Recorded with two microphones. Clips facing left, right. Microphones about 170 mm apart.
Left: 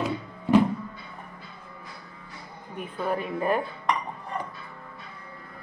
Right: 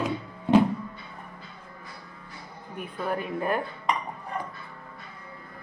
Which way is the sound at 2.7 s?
Centre (ahead or behind).